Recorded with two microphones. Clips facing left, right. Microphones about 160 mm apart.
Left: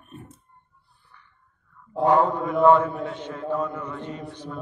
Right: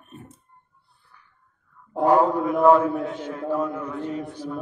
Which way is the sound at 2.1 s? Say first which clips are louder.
Right 3 dB; 10° right (ahead or behind).